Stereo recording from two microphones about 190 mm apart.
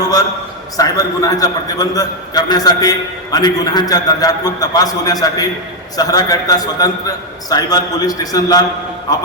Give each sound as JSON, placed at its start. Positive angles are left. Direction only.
{"t": 0.8, "sound": "a man's voice", "side_deg": 20}